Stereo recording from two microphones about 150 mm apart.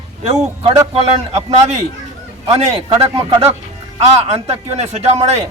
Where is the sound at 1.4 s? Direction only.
45° right (ahead or behind).